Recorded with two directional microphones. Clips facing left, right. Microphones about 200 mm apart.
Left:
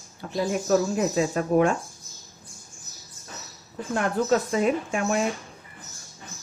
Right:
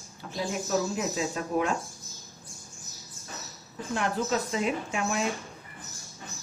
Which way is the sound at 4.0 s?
45° left (ahead or behind).